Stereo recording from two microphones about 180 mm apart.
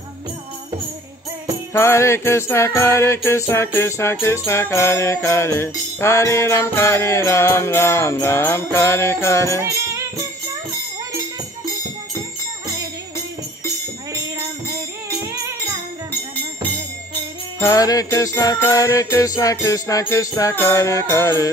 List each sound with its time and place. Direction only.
1.7 s music: 15° left (ahead or behind)
9.6 s music: 15° right (ahead or behind)
17.6 s music: 20° left (ahead or behind)